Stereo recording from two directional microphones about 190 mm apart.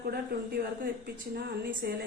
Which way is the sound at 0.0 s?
55° right (ahead or behind).